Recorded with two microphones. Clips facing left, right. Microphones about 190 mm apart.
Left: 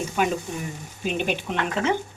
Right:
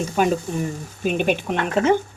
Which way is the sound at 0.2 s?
40° right (ahead or behind).